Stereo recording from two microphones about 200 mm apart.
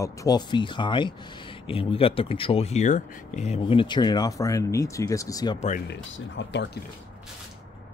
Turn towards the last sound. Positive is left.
turn(degrees=65)  # may be behind; listen again after turning